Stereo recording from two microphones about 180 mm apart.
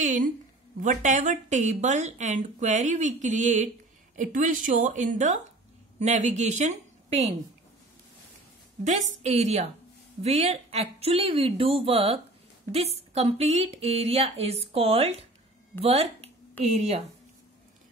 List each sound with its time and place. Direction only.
0.0 s a sound: 45° right (ahead or behind)
0.7 s a woman's voice: 45° right (ahead or behind)
9.2 s speech: 35° right (ahead or behind)